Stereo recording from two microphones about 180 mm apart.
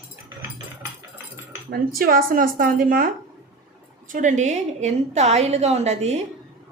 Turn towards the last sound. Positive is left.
turn(degrees=-35)  # may be behind; listen again after turning